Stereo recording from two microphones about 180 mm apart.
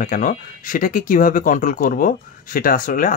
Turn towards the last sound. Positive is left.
turn(degrees=50)  # may be behind; listen again after turning